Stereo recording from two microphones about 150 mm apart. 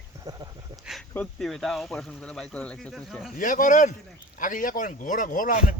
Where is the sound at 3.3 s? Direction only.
60° left (ahead or behind).